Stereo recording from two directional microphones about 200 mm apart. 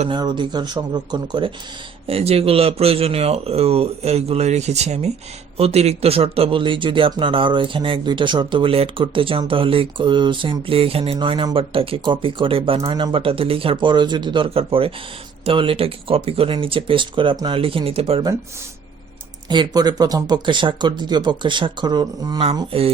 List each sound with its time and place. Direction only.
0.1 s speech: 20° right (ahead or behind)
19.5 s speech: 20° right (ahead or behind)